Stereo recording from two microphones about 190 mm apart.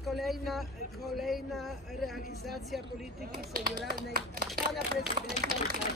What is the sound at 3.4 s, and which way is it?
Speech, 50° right (ahead or behind).